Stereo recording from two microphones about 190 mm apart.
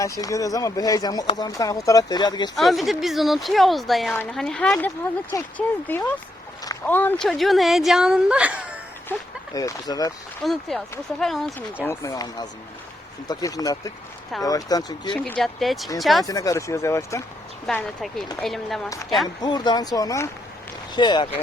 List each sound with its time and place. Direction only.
0.0 s speech: 15° left (ahead or behind)
2.6 s a woman's voice: centre (ahead or behind)
9.6 s speech: 20° left (ahead or behind)
10.4 s a woman's voice: centre (ahead or behind)
11.9 s speech: 15° left (ahead or behind)
15.1 s a woman's voice: centre (ahead or behind)
16.2 s speech: 20° left (ahead or behind)
17.7 s a woman's voice: centre (ahead or behind)
19.4 s speech: 20° left (ahead or behind)